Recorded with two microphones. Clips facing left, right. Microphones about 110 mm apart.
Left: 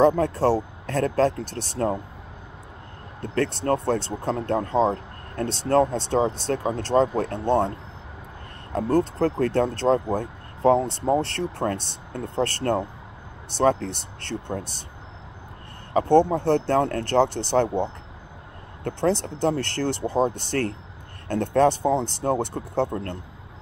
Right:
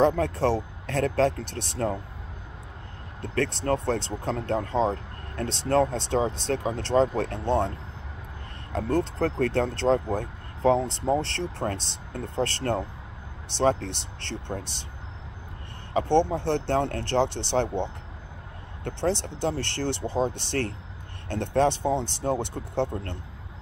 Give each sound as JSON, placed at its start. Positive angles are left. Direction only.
{"t": 0.2, "sound": "speech", "side_deg": 40}
{"t": 3.2, "sound": "speech", "side_deg": 45}
{"t": 8.7, "sound": "speech", "side_deg": 40}
{"t": 15.9, "sound": "speech", "side_deg": 45}
{"t": 18.9, "sound": "speech", "side_deg": 45}